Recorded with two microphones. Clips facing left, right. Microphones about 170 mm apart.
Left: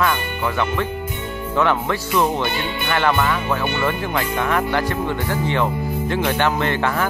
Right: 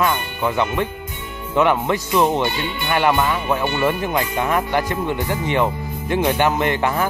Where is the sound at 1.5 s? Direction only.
15° right (ahead or behind).